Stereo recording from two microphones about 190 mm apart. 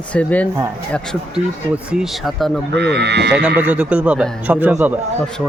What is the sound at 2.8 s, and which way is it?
Speech, 65° right (ahead or behind).